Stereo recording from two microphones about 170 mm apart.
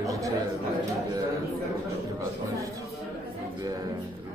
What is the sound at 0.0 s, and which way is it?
Chatter, 20° right (ahead or behind).